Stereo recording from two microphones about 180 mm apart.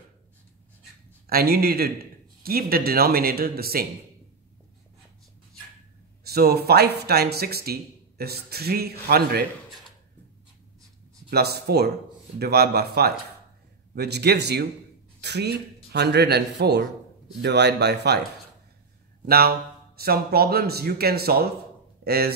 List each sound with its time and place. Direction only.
1.2 s speech: 60° right (ahead or behind)
6.2 s speech: 60° right (ahead or behind)
11.2 s a man's voice: 60° right (ahead or behind)
19.2 s speech: 60° right (ahead or behind)